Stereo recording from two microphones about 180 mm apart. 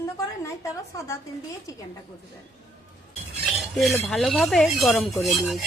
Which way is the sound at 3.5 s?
Centre (ahead or behind).